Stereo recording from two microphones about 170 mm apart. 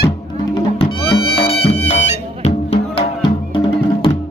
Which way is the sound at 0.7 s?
25° left (ahead or behind).